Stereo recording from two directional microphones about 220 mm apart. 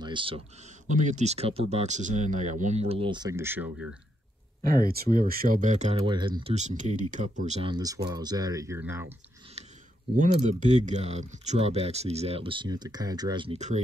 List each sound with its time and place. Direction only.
0.0 s a sound: 20° right (ahead or behind)
0.8 s speech: 35° right (ahead or behind); by 3.8 s 10° right (ahead or behind)
4.7 s speech: 40° right (ahead or behind); by 6.3 s 20° right (ahead or behind)
6.4 s speech: 30° right (ahead or behind)
7.7 s speech: 15° right (ahead or behind)
10.1 s speech: 35° right (ahead or behind)